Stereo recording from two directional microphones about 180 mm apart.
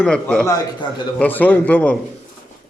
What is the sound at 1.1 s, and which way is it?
Speech, 10° left (ahead or behind).